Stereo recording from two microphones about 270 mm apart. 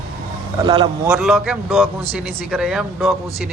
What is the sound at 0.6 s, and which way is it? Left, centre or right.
Speech, centre.